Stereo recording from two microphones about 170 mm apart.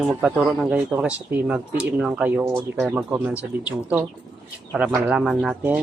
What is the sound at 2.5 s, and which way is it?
Speech, centre (ahead or behind).